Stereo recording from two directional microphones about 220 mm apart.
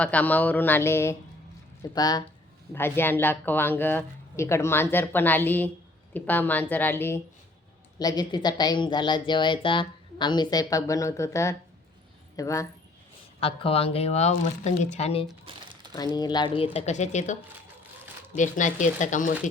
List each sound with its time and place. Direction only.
0.0 s speech: 5° left (ahead or behind)
13.4 s speech: 25° left (ahead or behind)
16.7 s speech: 30° left (ahead or behind)
18.3 s speech: 35° left (ahead or behind)